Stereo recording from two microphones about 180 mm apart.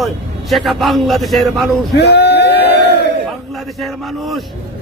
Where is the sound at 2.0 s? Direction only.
65° left (ahead or behind).